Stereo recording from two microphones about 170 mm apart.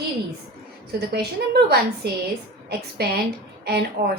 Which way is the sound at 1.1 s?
75° right (ahead or behind).